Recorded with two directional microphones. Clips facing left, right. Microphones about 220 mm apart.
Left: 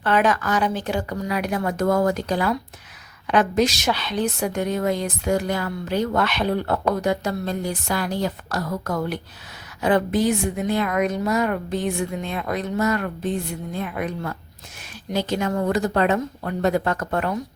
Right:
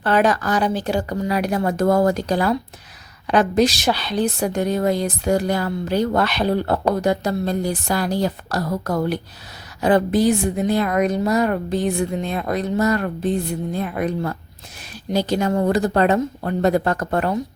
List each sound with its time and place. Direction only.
0.0 s a woman's voice: 35° right (ahead or behind)